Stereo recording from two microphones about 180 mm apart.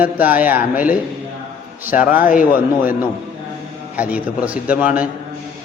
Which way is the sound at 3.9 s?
5° right (ahead or behind).